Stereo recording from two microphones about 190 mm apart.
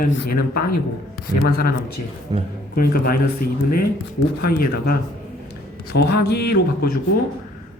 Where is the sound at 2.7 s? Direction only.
50° left (ahead or behind).